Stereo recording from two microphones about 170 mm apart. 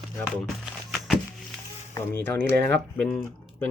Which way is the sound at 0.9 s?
Centre (ahead or behind).